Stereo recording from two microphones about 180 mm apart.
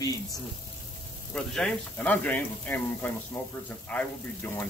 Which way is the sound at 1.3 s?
5° left (ahead or behind).